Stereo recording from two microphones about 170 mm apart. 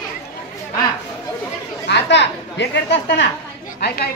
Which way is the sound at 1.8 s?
90° left.